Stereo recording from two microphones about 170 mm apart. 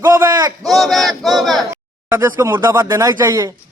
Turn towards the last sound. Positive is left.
turn(degrees=-20)  # may be behind; listen again after turning